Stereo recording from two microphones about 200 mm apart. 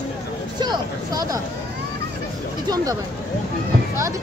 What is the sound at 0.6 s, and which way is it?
Speech, 20° right (ahead or behind).